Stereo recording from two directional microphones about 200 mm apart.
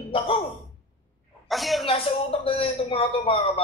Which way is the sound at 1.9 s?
25° left (ahead or behind).